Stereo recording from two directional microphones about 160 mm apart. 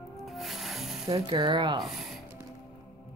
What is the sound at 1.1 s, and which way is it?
Speech, 30° right (ahead or behind).